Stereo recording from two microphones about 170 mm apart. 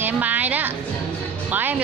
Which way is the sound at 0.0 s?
10° right (ahead or behind).